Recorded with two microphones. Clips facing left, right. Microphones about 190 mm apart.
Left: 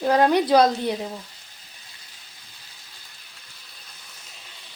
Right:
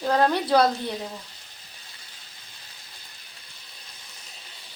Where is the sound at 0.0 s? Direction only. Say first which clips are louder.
Left 4 dB; 15° left (ahead or behind).